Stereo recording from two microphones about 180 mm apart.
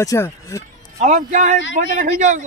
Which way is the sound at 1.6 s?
90° left.